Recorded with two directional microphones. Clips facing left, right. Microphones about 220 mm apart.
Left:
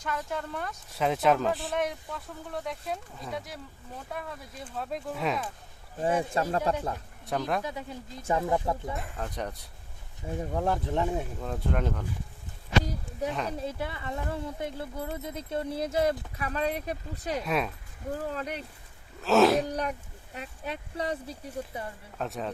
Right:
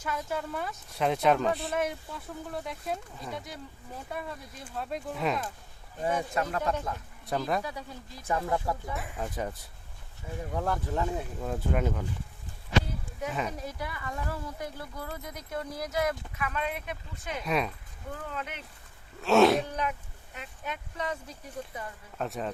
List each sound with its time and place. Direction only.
0.0 s speech: 5° right (ahead or behind)
6.0 s speech: 30° left (ahead or behind)
7.3 s speech: centre (ahead or behind)
7.6 s speech: 20° left (ahead or behind)
9.0 s speech: 5° right (ahead or behind)
10.2 s speech: 30° left (ahead or behind)
11.3 s speech: 5° right (ahead or behind)
13.6 s speech: 25° left (ahead or behind)
17.4 s speech: centre (ahead or behind)
18.1 s speech: 35° left (ahead or behind)
19.2 s speech: centre (ahead or behind)
19.6 s speech: 40° left (ahead or behind)
22.2 s speech: centre (ahead or behind)